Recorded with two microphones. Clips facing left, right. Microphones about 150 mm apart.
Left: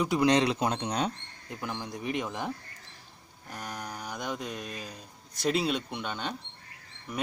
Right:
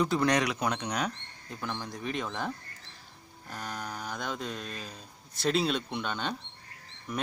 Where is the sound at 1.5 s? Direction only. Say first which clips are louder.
Left 1 dB; 15° left (ahead or behind).